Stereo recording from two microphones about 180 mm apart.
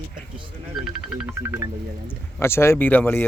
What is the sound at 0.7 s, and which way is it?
Music, 5° right (ahead or behind).